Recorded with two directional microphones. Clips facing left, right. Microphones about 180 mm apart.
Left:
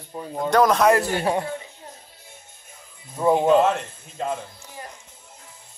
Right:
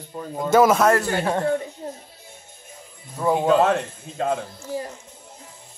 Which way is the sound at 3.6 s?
70° right (ahead or behind).